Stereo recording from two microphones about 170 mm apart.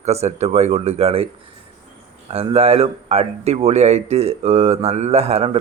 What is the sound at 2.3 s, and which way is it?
Speech, 35° right (ahead or behind).